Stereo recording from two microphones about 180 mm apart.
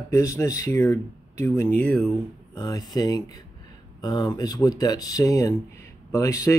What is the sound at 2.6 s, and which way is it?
Speech, 20° left (ahead or behind).